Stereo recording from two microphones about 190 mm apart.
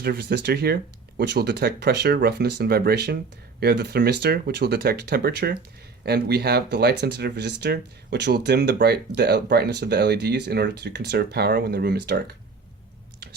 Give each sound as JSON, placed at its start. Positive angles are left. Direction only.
{"t": 0.0, "sound": "speech", "side_deg": -60}